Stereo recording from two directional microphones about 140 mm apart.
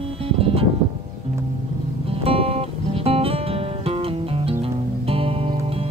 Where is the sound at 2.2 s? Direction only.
45° right (ahead or behind).